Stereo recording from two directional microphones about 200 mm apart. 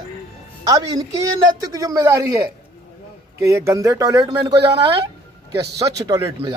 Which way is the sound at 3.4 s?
15° right (ahead or behind).